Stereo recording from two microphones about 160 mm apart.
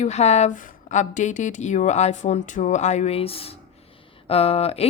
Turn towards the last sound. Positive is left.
turn(degrees=40)  # may be behind; listen again after turning